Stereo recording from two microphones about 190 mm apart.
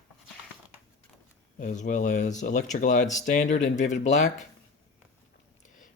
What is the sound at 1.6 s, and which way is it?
Speech, 40° left (ahead or behind).